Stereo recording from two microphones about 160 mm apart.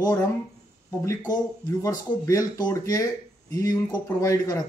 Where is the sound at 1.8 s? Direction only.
20° left (ahead or behind).